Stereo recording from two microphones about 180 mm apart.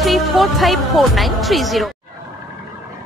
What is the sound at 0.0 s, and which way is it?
Speech, centre (ahead or behind).